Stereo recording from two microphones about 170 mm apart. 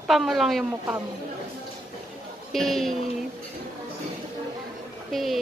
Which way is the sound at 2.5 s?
Centre (ahead or behind).